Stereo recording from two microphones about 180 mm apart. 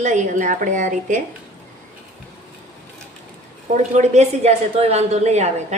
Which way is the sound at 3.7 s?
40° right (ahead or behind).